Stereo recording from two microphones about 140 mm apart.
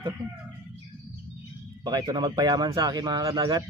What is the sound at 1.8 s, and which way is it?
A man's voice, 30° right (ahead or behind).